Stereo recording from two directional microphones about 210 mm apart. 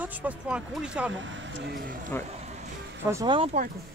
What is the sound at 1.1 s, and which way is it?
Speech, 55° right (ahead or behind).